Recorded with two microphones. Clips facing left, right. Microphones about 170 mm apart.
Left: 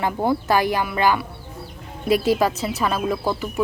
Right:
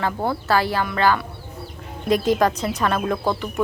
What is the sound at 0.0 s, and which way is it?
A woman's voice, 15° left (ahead or behind).